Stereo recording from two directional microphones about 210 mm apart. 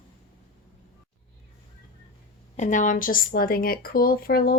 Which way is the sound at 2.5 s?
35° left (ahead or behind).